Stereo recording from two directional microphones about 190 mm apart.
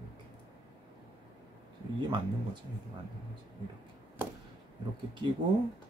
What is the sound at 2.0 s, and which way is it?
Speech, 25° right (ahead or behind).